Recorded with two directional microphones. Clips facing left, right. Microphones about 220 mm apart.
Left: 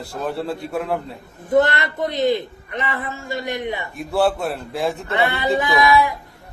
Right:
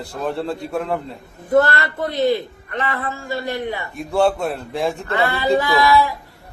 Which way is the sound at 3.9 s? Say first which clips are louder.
Right 2 dB; centre (ahead or behind).